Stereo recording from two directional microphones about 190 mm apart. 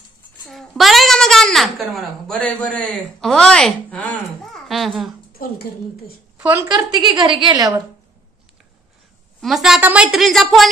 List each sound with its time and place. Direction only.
0.5 s a woman's voice: centre (ahead or behind)
5.4 s a woman's voice: 50° left (ahead or behind)
6.3 s a woman's voice: 10° right (ahead or behind)
9.4 s a woman's voice: centre (ahead or behind)